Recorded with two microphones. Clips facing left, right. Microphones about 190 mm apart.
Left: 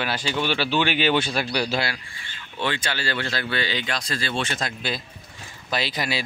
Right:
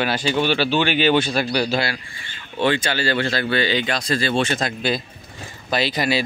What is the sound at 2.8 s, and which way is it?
Speech, 90° right.